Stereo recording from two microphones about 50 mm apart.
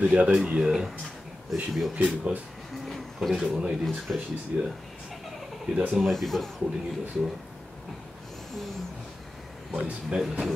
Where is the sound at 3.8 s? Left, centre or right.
Centre.